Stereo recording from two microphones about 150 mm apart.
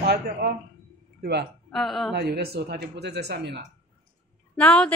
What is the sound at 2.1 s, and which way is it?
Speech, 90° right.